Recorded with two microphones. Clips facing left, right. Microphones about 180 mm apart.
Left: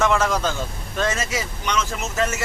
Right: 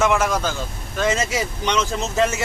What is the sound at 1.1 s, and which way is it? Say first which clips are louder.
Speech: right 4 dB; 25° right (ahead or behind).